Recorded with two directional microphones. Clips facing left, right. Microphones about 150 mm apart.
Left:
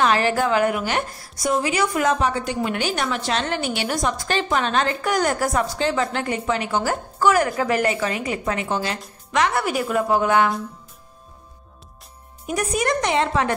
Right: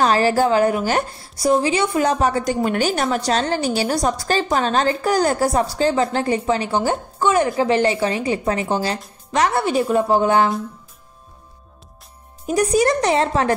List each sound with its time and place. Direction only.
0.0 s a woman's voice: 35° right (ahead or behind)
12.4 s a woman's voice: 35° right (ahead or behind)